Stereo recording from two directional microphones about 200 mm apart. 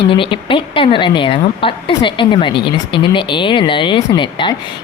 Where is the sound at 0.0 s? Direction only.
25° left (ahead or behind).